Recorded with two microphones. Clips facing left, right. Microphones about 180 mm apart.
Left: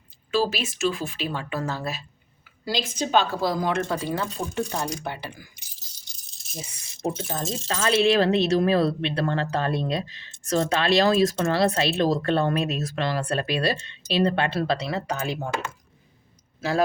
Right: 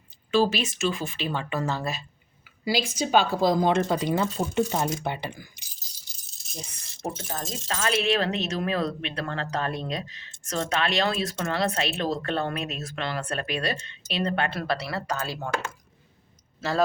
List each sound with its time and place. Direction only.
0.3 s speech: 5° left (ahead or behind)
2.6 s a woman's voice: 10° right (ahead or behind)
7.3 s speech: 25° left (ahead or behind)
16.6 s speech: 10° left (ahead or behind)